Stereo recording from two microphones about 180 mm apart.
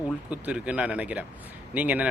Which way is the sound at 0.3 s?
5° right (ahead or behind).